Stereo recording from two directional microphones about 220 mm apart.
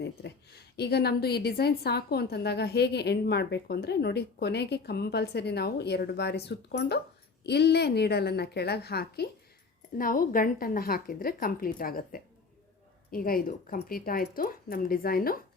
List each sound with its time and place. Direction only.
0.0 s a woman's voice: 45° left (ahead or behind)